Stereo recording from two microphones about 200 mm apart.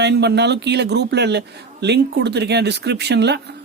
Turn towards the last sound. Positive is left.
turn(degrees=-55)  # may be behind; listen again after turning